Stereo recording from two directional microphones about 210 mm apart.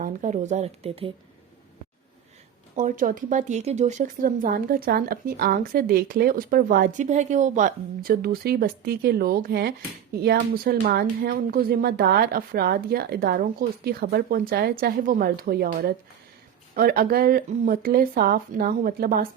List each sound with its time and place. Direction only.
0.0 s speech: 35° right (ahead or behind)
2.7 s speech: 40° right (ahead or behind)